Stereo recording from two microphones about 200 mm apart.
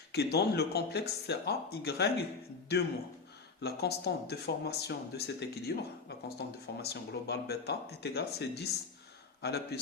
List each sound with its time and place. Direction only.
0.1 s speech: 55° left (ahead or behind)